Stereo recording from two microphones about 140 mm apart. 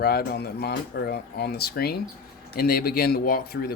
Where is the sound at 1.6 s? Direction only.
90° left.